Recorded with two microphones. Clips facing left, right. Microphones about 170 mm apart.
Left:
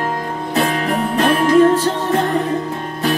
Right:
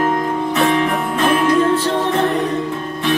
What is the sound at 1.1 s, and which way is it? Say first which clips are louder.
Music: left 3 dB; 40° left (ahead or behind).